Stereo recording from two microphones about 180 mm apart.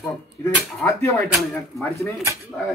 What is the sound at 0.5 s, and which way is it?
Speech, 15° left (ahead or behind).